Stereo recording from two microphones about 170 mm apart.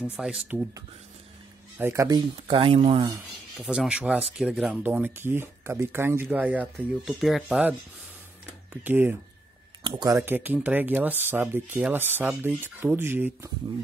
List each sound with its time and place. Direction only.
0.0 s speech: 5° right (ahead or behind)
1.8 s speech: 15° right (ahead or behind); by 3.1 s 35° right (ahead or behind)
3.5 s speech: 5° right (ahead or behind)
9.8 s speech: 25° right (ahead or behind)